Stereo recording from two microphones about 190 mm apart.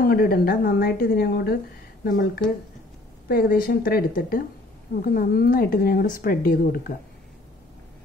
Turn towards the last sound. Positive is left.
turn(degrees=50)  # may be behind; listen again after turning